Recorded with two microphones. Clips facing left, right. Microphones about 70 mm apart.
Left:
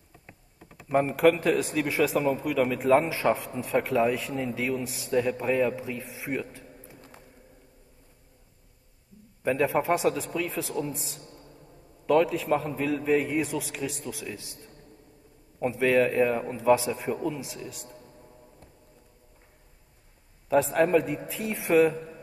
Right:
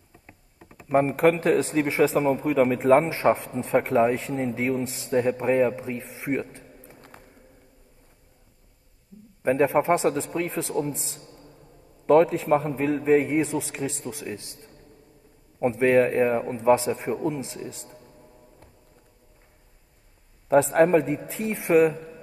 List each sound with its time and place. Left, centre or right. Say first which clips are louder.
0.8 s a man's voice: right 2 dB; right
7.0 s a sound: right 2 dB; right
9.4 s a man's voice: right 4 dB; right
15.6 s a man's voice: right 3 dB; right
20.4 s a man's voice: right 4 dB; right